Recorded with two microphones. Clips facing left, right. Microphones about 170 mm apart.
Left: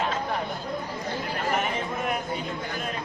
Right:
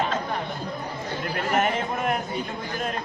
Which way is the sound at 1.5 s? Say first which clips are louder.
Right 7 dB; 50° right (ahead or behind).